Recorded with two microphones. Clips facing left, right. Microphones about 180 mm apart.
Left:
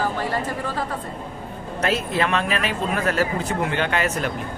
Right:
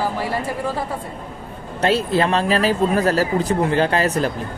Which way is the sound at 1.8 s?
30° right (ahead or behind).